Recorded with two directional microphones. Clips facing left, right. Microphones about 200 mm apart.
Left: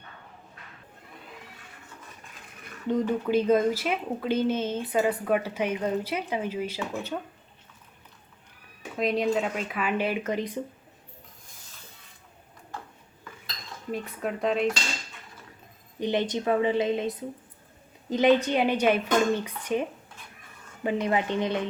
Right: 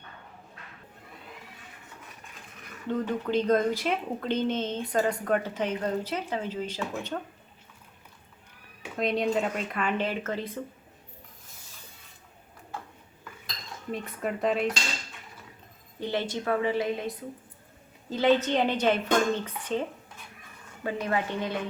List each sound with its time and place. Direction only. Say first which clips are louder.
2.8 s speech: left 3 dB; 15° left (ahead or behind)
9.0 s speech: left 1 dB; centre (ahead or behind)
13.9 s speech: left 1 dB; centre (ahead or behind)
16.0 s a woman's voice: left 4 dB; 20° left (ahead or behind)
20.8 s a woman's voice: left 3 dB; 20° left (ahead or behind)